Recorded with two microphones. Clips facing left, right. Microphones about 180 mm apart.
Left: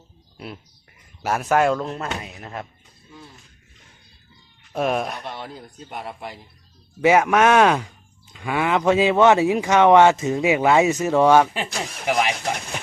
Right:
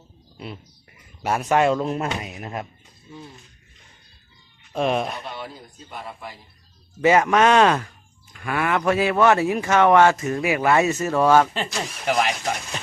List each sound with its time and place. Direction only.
0.3 s a sound: centre (ahead or behind)
1.2 s speech: centre (ahead or behind)
2.0 s speech: 15° right (ahead or behind)
4.7 s speech: 5° left (ahead or behind)
7.0 s speech: 10° left (ahead or behind)